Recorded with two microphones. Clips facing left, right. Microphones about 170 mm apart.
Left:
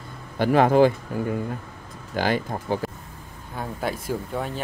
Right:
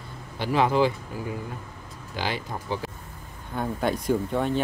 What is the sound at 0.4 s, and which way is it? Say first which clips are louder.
Speech: left 5 dB; 50° left (ahead or behind).